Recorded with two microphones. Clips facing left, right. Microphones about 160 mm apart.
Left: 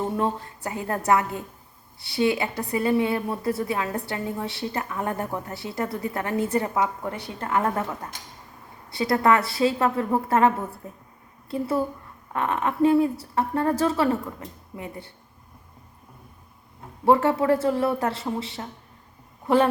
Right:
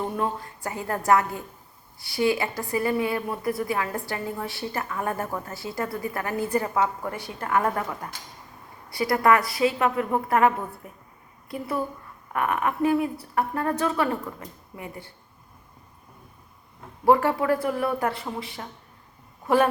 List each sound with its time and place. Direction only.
0.0 s a woman's voice: 20° left (ahead or behind)
17.1 s a woman's voice: 25° left (ahead or behind)